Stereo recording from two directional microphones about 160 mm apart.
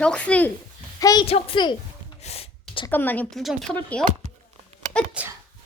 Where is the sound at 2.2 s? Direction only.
40° left (ahead or behind).